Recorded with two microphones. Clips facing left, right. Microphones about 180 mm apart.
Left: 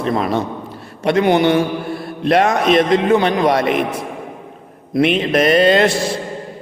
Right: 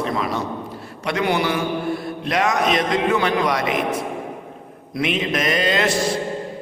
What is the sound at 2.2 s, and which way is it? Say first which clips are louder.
Speech: left 6 dB; 55° left (ahead or behind).